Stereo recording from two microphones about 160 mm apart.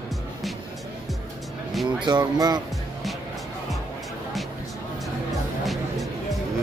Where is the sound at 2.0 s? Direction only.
25° right (ahead or behind).